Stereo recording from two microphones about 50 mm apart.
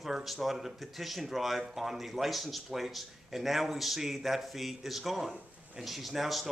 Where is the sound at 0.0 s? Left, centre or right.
Centre.